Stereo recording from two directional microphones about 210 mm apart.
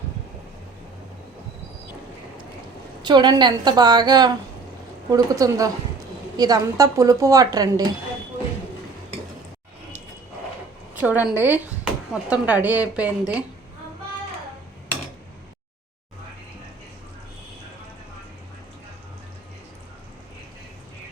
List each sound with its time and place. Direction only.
3.0 s a woman's voice: 20° right (ahead or behind)
10.9 s speech: 5° right (ahead or behind)